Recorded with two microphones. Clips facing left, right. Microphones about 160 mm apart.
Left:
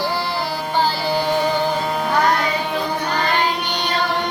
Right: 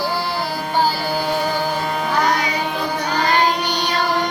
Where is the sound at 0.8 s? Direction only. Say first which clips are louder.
Even; 10° right (ahead or behind).